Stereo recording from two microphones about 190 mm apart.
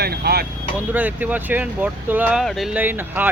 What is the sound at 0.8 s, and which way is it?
Speech, 10° right (ahead or behind).